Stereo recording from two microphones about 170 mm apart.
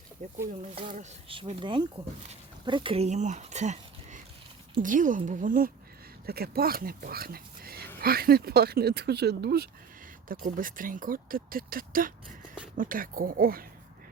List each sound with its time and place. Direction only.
0.2 s speech: 50° right (ahead or behind)
1.5 s speech: 30° right (ahead or behind); by 9.6 s 70° right (ahead or behind)
10.2 s speech: 55° right (ahead or behind)